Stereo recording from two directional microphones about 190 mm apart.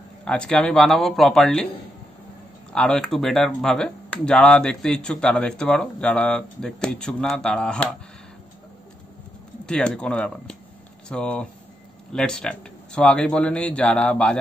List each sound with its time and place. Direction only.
0.2 s speech: 5° left (ahead or behind)
2.7 s speech: 5° left (ahead or behind)
9.7 s speech: 5° left (ahead or behind)